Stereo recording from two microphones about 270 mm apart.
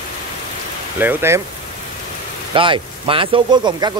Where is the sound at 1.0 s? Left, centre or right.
Centre.